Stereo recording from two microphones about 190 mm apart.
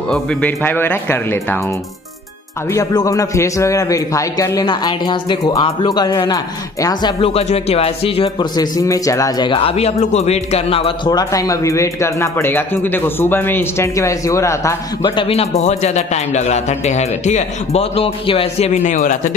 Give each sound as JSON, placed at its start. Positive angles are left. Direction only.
{"t": 0.1, "sound": "speech", "side_deg": 5}
{"t": 2.7, "sound": "a man's voice", "side_deg": 20}